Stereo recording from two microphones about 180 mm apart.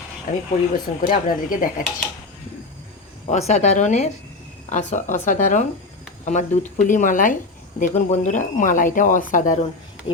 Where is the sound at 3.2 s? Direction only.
40° left (ahead or behind).